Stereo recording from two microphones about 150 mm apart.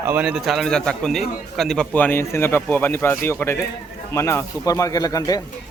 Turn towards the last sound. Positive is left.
turn(degrees=25)  # may be behind; listen again after turning